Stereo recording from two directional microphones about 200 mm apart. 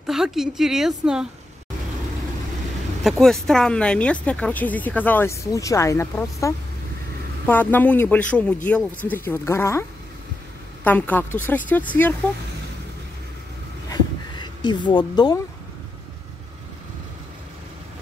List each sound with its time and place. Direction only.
0.0 s a woman's voice: centre (ahead or behind)
3.0 s speech: centre (ahead or behind)
13.8 s a sound: 20° left (ahead or behind)